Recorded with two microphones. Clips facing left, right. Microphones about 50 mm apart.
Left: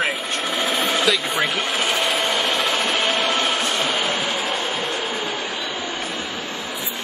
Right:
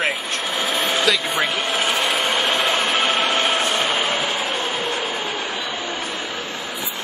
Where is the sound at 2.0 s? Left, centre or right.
Right.